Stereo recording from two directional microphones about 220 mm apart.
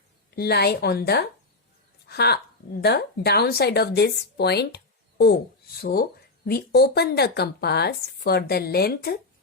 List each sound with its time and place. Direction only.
0.3 s speech: 45° left (ahead or behind)